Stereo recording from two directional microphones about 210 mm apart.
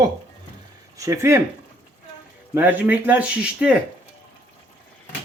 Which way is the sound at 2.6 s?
10° right (ahead or behind).